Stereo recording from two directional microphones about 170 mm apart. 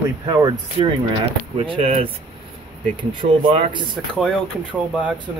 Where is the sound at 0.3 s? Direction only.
25° right (ahead or behind).